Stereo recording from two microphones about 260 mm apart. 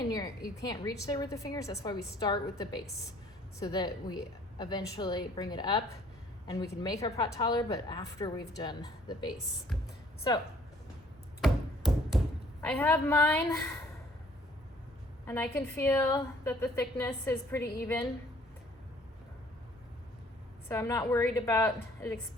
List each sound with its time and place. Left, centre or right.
0.7 s speech: centre
11.3 s tap: centre
12.6 s speech: centre
15.3 s speech: centre
20.7 s speech: centre